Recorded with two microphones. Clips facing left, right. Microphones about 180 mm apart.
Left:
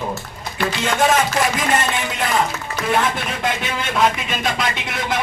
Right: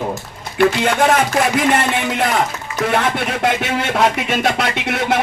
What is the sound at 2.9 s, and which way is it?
Speech, 70° right (ahead or behind).